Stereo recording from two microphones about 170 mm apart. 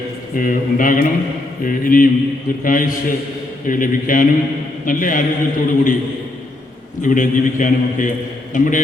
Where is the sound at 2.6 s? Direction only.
50° left (ahead or behind).